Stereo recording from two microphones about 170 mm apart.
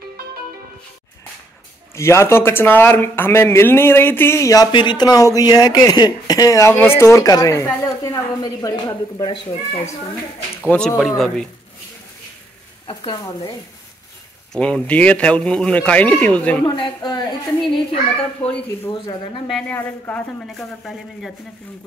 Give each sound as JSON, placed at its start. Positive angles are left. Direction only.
{"t": 2.0, "sound": "speech", "side_deg": 15}
{"t": 10.7, "sound": "a man's voice", "side_deg": 5}
{"t": 12.8, "sound": "speech", "side_deg": 30}
{"t": 14.5, "sound": "speech", "side_deg": 5}
{"t": 16.6, "sound": "speech", "side_deg": 25}
{"t": 18.1, "sound": "a man's voice", "side_deg": 5}